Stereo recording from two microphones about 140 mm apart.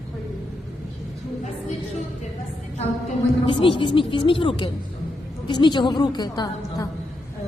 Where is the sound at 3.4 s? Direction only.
40° left (ahead or behind).